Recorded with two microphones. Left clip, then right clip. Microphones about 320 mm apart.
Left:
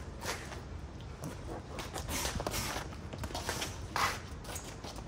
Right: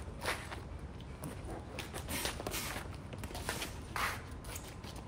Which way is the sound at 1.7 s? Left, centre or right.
Centre.